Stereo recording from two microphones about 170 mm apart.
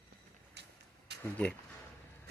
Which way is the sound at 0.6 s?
80° right.